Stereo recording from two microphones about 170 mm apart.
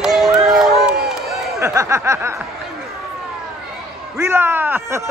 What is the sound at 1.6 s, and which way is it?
Snicker, 15° right (ahead or behind).